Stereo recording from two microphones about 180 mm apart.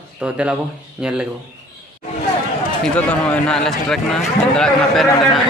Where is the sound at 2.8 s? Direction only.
5° left (ahead or behind).